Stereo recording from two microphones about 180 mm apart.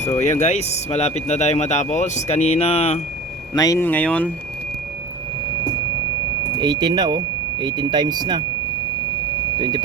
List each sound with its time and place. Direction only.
0.1 s speech: 40° left (ahead or behind)
3.5 s speech: 20° left (ahead or behind)
6.6 s speech: 25° right (ahead or behind)
9.6 s speech: 25° right (ahead or behind)